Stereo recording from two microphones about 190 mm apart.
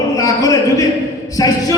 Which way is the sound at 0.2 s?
15° left (ahead or behind).